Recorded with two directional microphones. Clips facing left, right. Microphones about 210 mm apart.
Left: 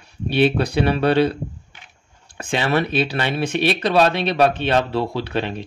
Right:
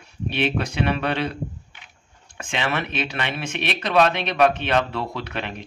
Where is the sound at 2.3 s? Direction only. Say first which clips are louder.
Left 6 dB; 35° left (ahead or behind).